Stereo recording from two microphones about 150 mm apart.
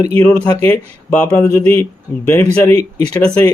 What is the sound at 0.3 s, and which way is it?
Speech, 15° left (ahead or behind).